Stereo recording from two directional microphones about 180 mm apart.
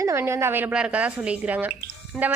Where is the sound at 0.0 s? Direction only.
15° right (ahead or behind).